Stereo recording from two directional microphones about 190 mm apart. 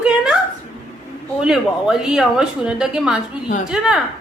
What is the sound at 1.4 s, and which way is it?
A woman's voice, 5° right (ahead or behind).